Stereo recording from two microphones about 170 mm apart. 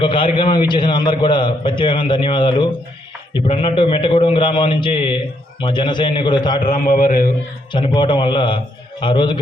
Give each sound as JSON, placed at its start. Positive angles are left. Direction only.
{"t": 0.0, "sound": "a man's voice", "side_deg": 30}
{"t": 6.6, "sound": "a man's voice", "side_deg": 50}
{"t": 7.7, "sound": "a man's voice", "side_deg": 25}